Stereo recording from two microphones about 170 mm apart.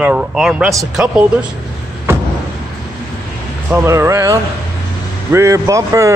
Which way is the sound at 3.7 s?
15° right (ahead or behind).